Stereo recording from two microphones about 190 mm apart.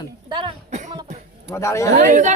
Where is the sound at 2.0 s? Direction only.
40° right (ahead or behind).